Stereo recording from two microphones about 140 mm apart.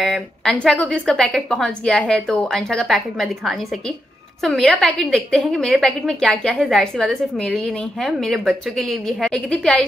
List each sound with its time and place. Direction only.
0.0 s a woman's voice: 5° left (ahead or behind)